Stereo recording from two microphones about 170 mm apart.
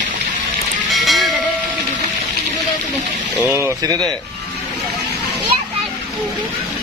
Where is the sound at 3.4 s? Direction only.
15° right (ahead or behind).